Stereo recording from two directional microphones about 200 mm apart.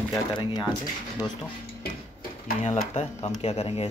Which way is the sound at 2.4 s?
35° left (ahead or behind).